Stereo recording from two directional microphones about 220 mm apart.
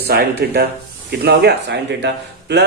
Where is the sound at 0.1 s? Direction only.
45° right (ahead or behind).